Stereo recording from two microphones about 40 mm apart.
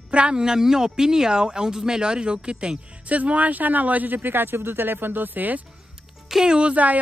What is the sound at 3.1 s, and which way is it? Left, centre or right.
Speech, right.